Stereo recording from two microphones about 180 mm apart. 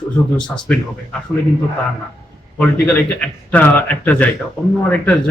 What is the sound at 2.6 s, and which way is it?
A man's voice, 5° left (ahead or behind).